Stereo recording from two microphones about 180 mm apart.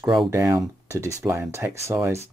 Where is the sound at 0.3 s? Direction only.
15° right (ahead or behind).